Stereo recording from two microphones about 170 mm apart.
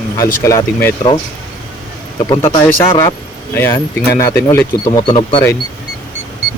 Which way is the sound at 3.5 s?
15° left (ahead or behind).